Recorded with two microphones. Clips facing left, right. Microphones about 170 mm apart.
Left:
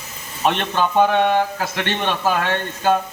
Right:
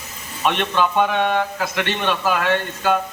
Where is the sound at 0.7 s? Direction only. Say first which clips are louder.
Left 3 dB; 40° left (ahead or behind).